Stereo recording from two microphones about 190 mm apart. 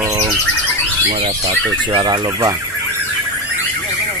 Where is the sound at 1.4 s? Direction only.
20° right (ahead or behind).